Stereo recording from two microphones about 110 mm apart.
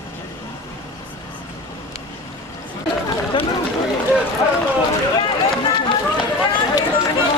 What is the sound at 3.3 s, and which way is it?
Run, 50° left (ahead or behind).